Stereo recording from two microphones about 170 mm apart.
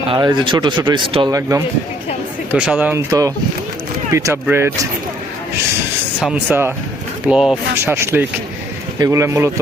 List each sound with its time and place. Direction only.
0.1 s speech: 30° right (ahead or behind)
1.4 s speech: 15° right (ahead or behind)
3.1 s speech: 20° right (ahead or behind)
6.1 s speech: 5° right (ahead or behind)
7.8 s speech: 15° right (ahead or behind)